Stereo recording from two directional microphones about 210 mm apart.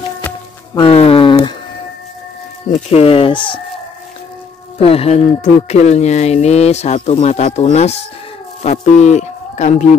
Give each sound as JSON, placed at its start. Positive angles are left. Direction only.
{"t": 0.7, "sound": "a sound", "side_deg": 25}
{"t": 2.7, "sound": "speech", "side_deg": 30}
{"t": 4.7, "sound": "speech", "side_deg": 25}